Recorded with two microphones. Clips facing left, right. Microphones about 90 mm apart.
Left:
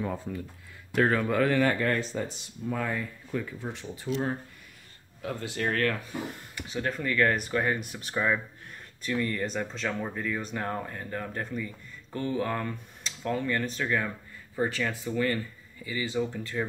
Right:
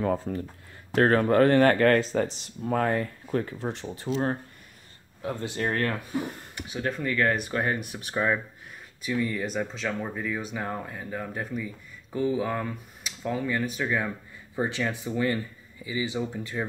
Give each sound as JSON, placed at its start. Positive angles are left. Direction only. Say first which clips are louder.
{"t": 0.0, "sound": "speech", "louder": "right 6 dB", "side_deg": -55}
{"t": 3.8, "sound": "speech", "louder": "right 2 dB", "side_deg": -45}
{"t": 5.2, "sound": "speech", "louder": "right 2 dB", "side_deg": -30}
{"t": 6.7, "sound": "speech", "louder": "right 1 dB", "side_deg": -10}
{"t": 9.0, "sound": "speech", "louder": "right 1 dB", "side_deg": -5}